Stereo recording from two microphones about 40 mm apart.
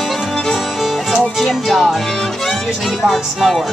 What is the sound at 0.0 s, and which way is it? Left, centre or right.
Music, centre.